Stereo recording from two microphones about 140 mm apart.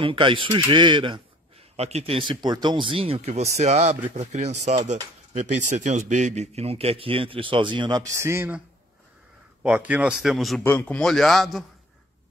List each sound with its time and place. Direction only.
0.0 s speech: 40° right (ahead or behind)
1.8 s speech: 50° right (ahead or behind); by 10.6 s centre (ahead or behind)
10.6 s a man's voice: 15° left (ahead or behind)
11.0 s speech: 5° left (ahead or behind)